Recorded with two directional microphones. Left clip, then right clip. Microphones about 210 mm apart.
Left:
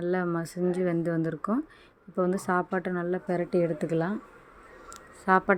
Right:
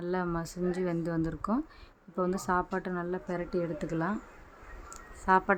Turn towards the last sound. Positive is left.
turn(degrees=15)  # may be behind; listen again after turning